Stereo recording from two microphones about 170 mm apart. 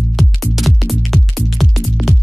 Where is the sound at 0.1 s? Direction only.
Centre (ahead or behind).